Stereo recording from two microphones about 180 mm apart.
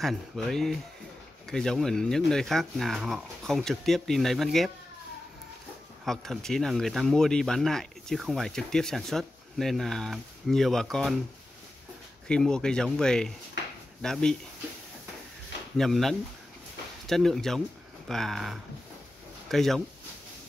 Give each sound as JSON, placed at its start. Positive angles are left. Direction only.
{"t": 0.0, "sound": "speech", "side_deg": 0}
{"t": 6.0, "sound": "speech", "side_deg": 0}
{"t": 12.3, "sound": "speech", "side_deg": 5}
{"t": 15.8, "sound": "speech", "side_deg": 0}